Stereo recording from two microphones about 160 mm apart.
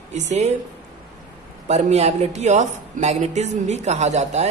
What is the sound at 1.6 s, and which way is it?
A woman's voice, 45° right (ahead or behind).